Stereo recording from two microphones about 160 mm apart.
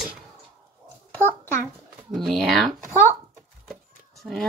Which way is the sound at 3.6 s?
Centre (ahead or behind).